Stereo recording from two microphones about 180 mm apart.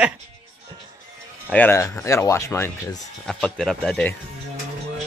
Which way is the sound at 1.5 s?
10° left (ahead or behind).